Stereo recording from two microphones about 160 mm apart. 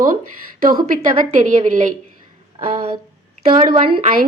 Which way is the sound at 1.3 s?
50° right (ahead or behind).